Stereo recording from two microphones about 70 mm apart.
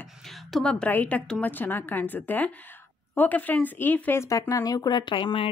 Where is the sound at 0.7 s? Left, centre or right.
Centre.